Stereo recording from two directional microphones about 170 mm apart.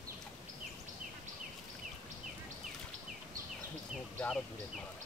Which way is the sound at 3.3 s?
50° right (ahead or behind).